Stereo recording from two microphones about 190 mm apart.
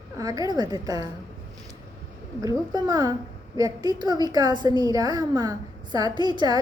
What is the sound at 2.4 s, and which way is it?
A woman's voice, 20° right (ahead or behind).